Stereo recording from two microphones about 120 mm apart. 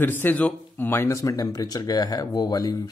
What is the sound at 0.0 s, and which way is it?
Speech, 15° left (ahead or behind).